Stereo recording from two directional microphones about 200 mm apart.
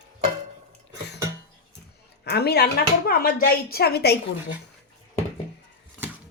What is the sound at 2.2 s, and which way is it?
Speech, 55° left (ahead or behind).